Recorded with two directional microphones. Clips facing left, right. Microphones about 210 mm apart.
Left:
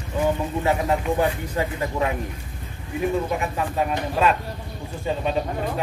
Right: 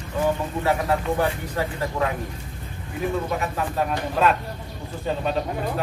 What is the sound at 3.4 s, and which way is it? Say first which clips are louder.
A man's voice: left 1 dB; 10° left (ahead or behind).